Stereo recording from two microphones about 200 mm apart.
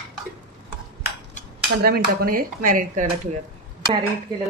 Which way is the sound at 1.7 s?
50° right (ahead or behind).